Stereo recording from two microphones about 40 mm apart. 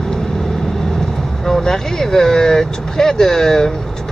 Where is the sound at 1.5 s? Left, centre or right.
Centre.